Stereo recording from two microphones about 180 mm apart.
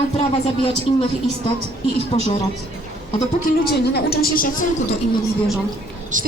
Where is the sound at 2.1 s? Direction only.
30° left (ahead or behind).